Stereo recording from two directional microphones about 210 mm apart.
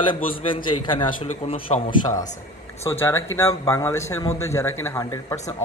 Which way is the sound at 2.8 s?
10° left (ahead or behind).